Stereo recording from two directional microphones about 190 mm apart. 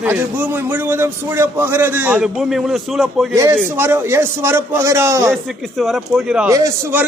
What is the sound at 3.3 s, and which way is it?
A man's voice, 15° right (ahead or behind).